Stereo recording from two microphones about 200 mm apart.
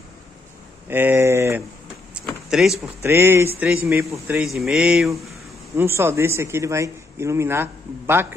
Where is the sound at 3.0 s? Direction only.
10° right (ahead or behind).